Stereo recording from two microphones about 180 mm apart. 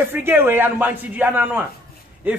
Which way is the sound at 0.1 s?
10° right (ahead or behind).